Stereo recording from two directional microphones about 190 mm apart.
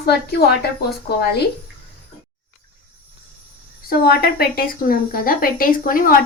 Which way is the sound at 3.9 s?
55° left (ahead or behind).